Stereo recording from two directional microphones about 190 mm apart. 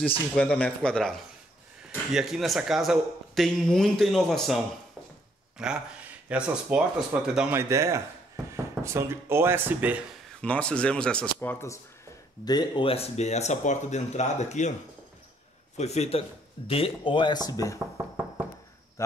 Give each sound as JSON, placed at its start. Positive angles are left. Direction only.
{"t": 0.3, "sound": "speech", "side_deg": 5}
{"t": 5.6, "sound": "speech", "side_deg": -5}
{"t": 10.4, "sound": "speech", "side_deg": 5}
{"t": 15.8, "sound": "speech", "side_deg": 35}
{"t": 17.7, "sound": "speech", "side_deg": -15}
{"t": 19.0, "sound": "speech", "side_deg": 15}